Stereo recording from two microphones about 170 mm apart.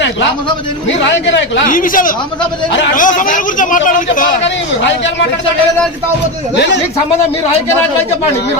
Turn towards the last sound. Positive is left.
turn(degrees=90)